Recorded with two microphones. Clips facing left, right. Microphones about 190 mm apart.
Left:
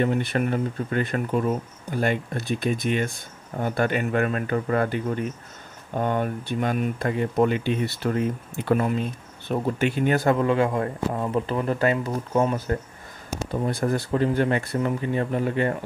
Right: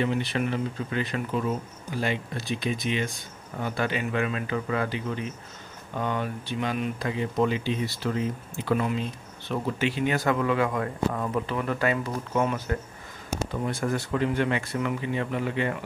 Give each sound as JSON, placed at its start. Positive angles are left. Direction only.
{"t": 0.0, "sound": "speech", "side_deg": 50}
{"t": 10.2, "sound": "speech", "side_deg": 30}